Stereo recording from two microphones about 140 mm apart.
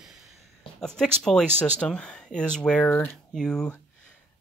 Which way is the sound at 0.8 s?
5° left (ahead or behind).